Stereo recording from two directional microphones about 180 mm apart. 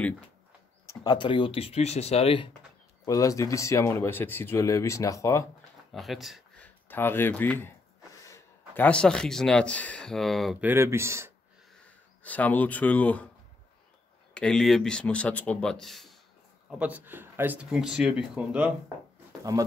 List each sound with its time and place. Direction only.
0.8 s speech: 25° left (ahead or behind)
3.1 s speech: 20° left (ahead or behind)
5.9 s a man's voice: centre (ahead or behind)
10.6 s speech: 10° right (ahead or behind)
12.2 s speech: 10° left (ahead or behind)
14.3 s speech: 5° left (ahead or behind)
19.5 s speech: 15° right (ahead or behind)